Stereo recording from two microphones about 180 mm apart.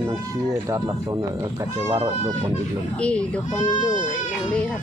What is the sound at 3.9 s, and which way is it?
Speech, 45° left (ahead or behind).